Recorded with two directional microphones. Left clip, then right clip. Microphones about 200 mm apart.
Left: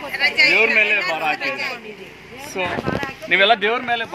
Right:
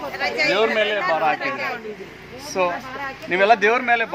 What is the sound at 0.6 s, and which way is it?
Speech, 10° right (ahead or behind).